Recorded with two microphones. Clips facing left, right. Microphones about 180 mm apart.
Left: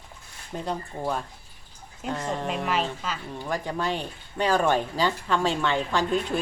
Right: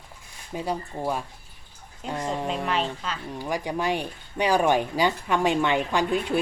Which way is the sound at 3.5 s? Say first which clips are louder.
Right 2 dB; 10° right (ahead or behind).